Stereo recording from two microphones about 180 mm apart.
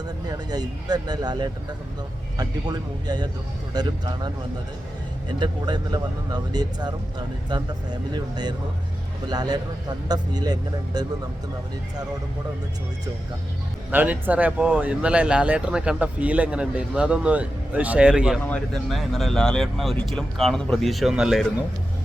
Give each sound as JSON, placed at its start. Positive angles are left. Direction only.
{"t": 0.3, "sound": "speech", "side_deg": -20}
{"t": 5.4, "sound": "speech", "side_deg": -25}
{"t": 8.1, "sound": "speech", "side_deg": -25}
{"t": 13.9, "sound": "speech", "side_deg": -10}